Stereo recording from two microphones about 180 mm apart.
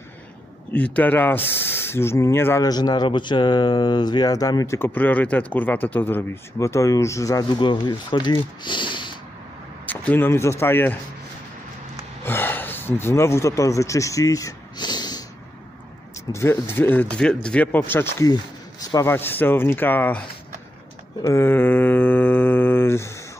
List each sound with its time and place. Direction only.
0.7 s speech: 10° left (ahead or behind); by 9.2 s 25° left (ahead or behind)
9.8 s a man's voice: 10° left (ahead or behind)
12.3 s speech: 10° left (ahead or behind)
16.3 s speech: 15° left (ahead or behind)